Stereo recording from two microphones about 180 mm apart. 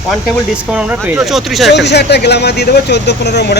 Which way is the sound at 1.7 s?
70° left (ahead or behind).